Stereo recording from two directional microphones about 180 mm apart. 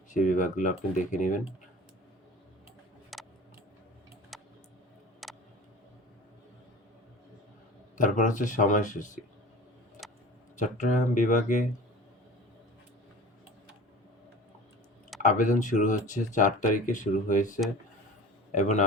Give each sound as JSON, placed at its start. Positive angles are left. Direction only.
{"t": 0.1, "sound": "speech", "side_deg": 45}
{"t": 3.1, "sound": "tick", "side_deg": 0}
{"t": 4.3, "sound": "a sound", "side_deg": 0}
{"t": 5.2, "sound": "tick", "side_deg": 0}
{"t": 7.9, "sound": "speech", "side_deg": 45}
{"t": 10.0, "sound": "tick-tock", "side_deg": 0}
{"t": 10.6, "sound": "speech", "side_deg": 45}
{"t": 15.2, "sound": "a man's voice", "side_deg": 45}